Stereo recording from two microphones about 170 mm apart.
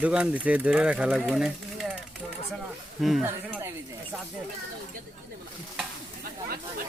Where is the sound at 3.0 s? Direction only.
Centre (ahead or behind).